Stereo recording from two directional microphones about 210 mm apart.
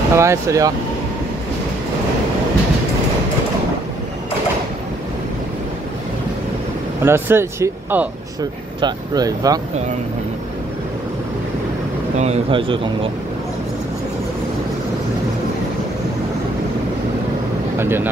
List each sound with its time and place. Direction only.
0.1 s speech: 15° right (ahead or behind)
7.0 s speech: 10° right (ahead or behind)
12.2 s speech: 30° right (ahead or behind)
17.7 s speech: 10° right (ahead or behind)